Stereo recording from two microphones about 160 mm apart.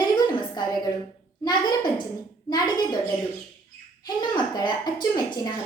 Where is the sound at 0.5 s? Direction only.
25° left (ahead or behind).